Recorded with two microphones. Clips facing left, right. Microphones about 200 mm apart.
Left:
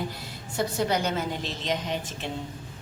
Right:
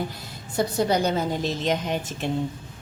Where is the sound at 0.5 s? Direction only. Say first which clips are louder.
Right 4 dB; 40° right (ahead or behind).